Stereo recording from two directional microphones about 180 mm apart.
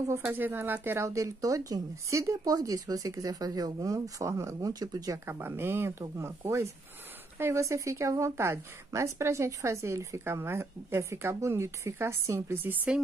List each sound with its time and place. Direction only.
0.2 s speech: 10° right (ahead or behind)